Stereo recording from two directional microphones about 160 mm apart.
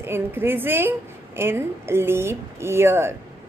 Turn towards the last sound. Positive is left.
turn(degrees=-15)  # may be behind; listen again after turning